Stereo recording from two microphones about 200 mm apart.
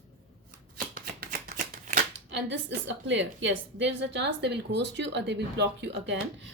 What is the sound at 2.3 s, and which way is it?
A woman's voice, 65° right (ahead or behind).